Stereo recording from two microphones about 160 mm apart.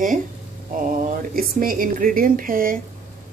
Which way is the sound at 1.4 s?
60° right (ahead or behind).